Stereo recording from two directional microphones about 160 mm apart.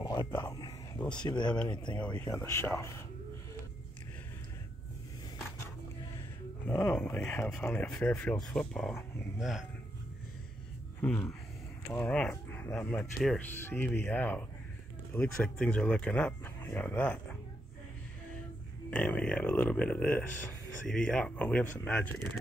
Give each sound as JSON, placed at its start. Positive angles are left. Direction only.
{"t": 0.0, "sound": "a sound", "side_deg": 25}
{"t": 0.9, "sound": "speech", "side_deg": 5}
{"t": 1.2, "sound": "speech", "side_deg": 25}
{"t": 6.7, "sound": "speech", "side_deg": 10}
{"t": 11.0, "sound": "speech", "side_deg": 10}
{"t": 18.9, "sound": "speech", "side_deg": 5}